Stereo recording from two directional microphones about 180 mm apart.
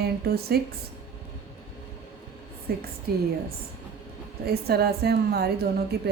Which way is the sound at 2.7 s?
60° right (ahead or behind).